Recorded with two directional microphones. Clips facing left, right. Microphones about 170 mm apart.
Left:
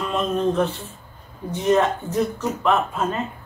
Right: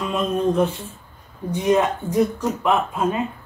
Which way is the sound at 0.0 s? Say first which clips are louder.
Right 1 dB; 10° right (ahead or behind).